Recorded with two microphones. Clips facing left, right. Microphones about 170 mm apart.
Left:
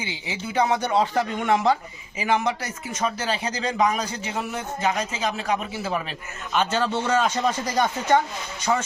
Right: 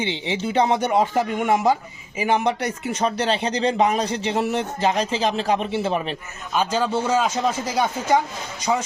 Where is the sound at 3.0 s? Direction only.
30° right (ahead or behind).